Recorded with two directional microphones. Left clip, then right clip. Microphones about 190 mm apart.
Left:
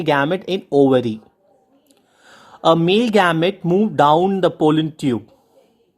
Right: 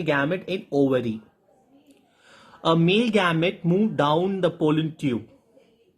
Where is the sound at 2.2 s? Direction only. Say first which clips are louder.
Left 8 dB; 40° left (ahead or behind).